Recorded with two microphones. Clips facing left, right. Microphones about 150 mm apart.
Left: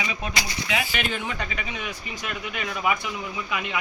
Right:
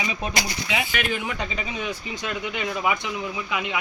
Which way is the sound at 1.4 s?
25° right (ahead or behind).